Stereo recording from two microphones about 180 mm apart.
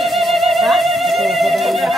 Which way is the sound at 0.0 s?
Centre (ahead or behind).